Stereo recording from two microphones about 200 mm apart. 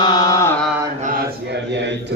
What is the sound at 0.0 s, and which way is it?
Mantra, 20° left (ahead or behind).